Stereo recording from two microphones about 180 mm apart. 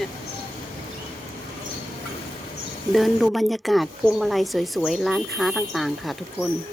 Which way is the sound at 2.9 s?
Centre (ahead or behind).